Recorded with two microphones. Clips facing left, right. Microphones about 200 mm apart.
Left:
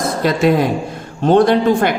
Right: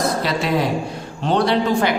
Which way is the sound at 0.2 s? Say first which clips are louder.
Left 6 dB; 50° left (ahead or behind).